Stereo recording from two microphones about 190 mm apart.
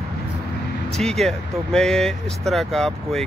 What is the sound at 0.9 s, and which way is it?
Speech, centre (ahead or behind).